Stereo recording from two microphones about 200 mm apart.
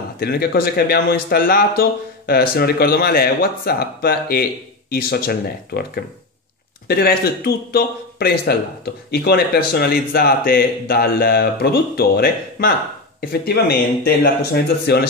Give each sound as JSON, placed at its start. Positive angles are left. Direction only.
{"t": 0.2, "sound": "speech", "side_deg": 50}